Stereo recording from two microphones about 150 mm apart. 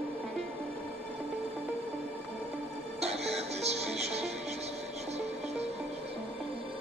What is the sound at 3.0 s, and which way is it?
Music, 45° right (ahead or behind).